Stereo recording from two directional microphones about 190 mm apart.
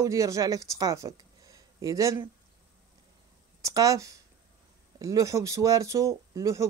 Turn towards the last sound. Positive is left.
turn(degrees=-15)  # may be behind; listen again after turning